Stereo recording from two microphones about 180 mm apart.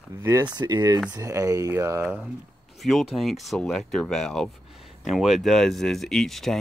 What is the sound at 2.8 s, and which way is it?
Speech, centre (ahead or behind).